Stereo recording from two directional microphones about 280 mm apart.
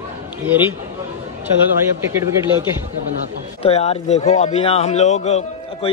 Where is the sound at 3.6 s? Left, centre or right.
Left.